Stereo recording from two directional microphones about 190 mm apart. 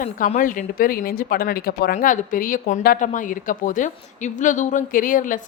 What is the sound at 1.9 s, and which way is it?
A woman's voice, 45° left (ahead or behind).